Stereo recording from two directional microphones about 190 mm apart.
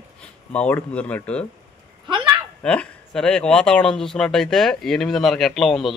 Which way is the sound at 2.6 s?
5° left (ahead or behind).